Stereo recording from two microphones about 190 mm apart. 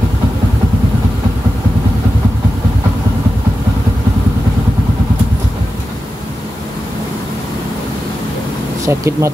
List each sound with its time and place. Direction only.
8.8 s speech: 15° right (ahead or behind)